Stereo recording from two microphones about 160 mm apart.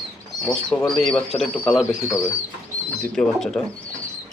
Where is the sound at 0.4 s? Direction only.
Centre (ahead or behind).